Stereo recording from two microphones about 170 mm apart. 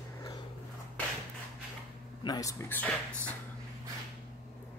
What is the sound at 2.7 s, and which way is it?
Speech, 10° left (ahead or behind).